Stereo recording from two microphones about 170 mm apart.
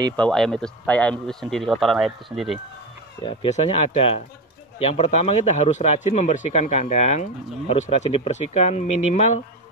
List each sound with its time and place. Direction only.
0.1 s speech: 5° left (ahead or behind)
3.3 s speech: 35° left (ahead or behind)